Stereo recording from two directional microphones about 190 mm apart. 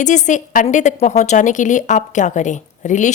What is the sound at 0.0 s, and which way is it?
A woman's voice, 40° left (ahead or behind).